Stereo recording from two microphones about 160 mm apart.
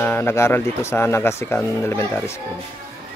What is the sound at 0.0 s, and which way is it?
Speech, 15° left (ahead or behind).